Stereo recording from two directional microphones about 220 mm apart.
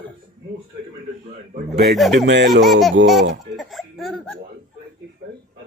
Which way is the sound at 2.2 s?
55° right (ahead or behind).